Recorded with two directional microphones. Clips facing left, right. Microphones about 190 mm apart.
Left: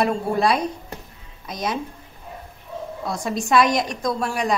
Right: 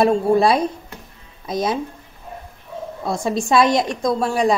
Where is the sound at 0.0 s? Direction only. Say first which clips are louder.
Right 5 dB; 30° right (ahead or behind).